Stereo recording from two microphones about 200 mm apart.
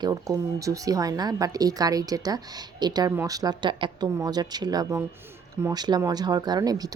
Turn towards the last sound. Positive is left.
turn(degrees=-20)  # may be behind; listen again after turning